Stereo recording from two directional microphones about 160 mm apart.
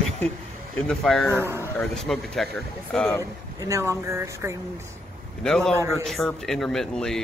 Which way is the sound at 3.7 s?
20° right (ahead or behind).